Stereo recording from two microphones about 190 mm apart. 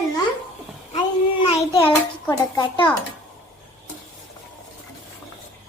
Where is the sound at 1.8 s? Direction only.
15° left (ahead or behind).